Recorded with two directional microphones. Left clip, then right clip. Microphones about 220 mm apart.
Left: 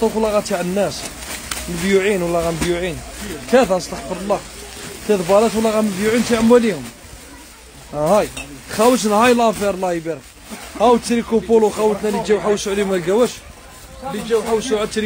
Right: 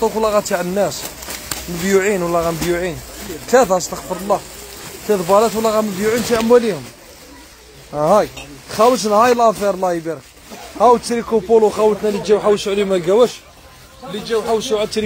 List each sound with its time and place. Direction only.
0.0 s speech: centre (ahead or behind)
7.9 s speech: 10° right (ahead or behind)
8.7 s speech: 20° left (ahead or behind)
9.5 s speech: 5° left (ahead or behind); by 13.4 s 15° right (ahead or behind)
14.3 s speech: 30° right (ahead or behind)